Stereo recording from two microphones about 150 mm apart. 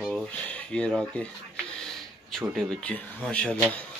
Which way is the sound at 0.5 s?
5° left (ahead or behind).